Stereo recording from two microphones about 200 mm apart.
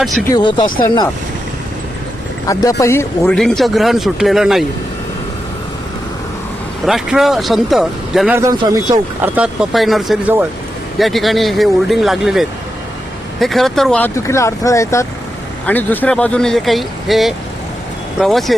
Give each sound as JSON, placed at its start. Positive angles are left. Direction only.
{"t": 0.0, "sound": "speech", "side_deg": 0}
{"t": 0.3, "sound": "speech", "side_deg": 20}
{"t": 2.5, "sound": "speech", "side_deg": 15}
{"t": 3.3, "sound": "speech", "side_deg": 0}
{"t": 6.8, "sound": "speech", "side_deg": 0}
{"t": 8.4, "sound": "speech", "side_deg": -15}